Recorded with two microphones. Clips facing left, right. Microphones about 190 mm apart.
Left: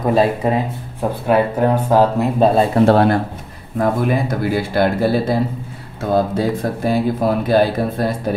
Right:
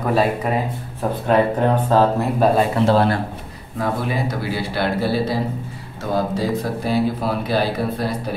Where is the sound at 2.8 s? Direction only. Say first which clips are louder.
Left 4 dB; 55° left (ahead or behind).